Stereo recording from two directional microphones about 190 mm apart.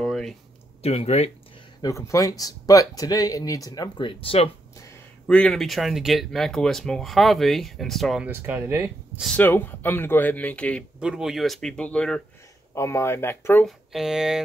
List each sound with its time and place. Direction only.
0.0 s a sound: centre (ahead or behind)
0.8 s speech: 35° left (ahead or behind)
1.8 s a man's voice: 15° left (ahead or behind)
5.2 s speech: 5° left (ahead or behind)
8.3 s speech: 10° right (ahead or behind)
9.2 s a man's voice: 5° left (ahead or behind)
11.0 s a man's voice: 5° right (ahead or behind); by 13.7 s 10° left (ahead or behind)
13.7 s speech: centre (ahead or behind)